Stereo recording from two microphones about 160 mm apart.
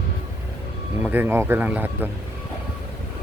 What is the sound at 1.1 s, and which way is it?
Speech, 15° right (ahead or behind).